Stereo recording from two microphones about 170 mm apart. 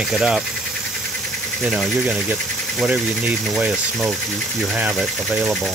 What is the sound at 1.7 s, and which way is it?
Speech, centre (ahead or behind).